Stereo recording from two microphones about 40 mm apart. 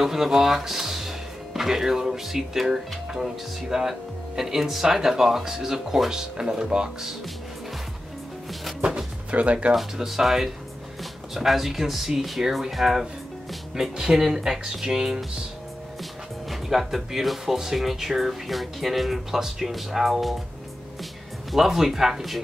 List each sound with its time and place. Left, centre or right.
0.0 s speech: centre
9.3 s speech: right
9.8 s speech: centre
13.7 s speech: centre
16.0 s speech: centre
21.5 s speech: centre